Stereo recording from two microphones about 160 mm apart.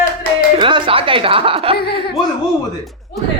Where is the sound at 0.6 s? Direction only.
30° right (ahead or behind).